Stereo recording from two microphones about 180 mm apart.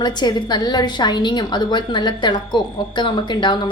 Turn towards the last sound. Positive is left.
turn(degrees=25)  # may be behind; listen again after turning